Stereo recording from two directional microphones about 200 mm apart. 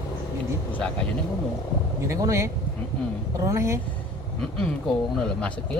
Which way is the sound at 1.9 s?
15° right (ahead or behind).